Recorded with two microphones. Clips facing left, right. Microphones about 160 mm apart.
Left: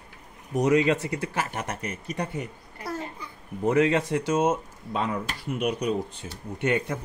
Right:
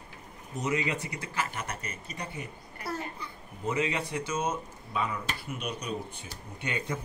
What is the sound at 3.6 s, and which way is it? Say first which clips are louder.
Speech: left 9 dB; 85° left.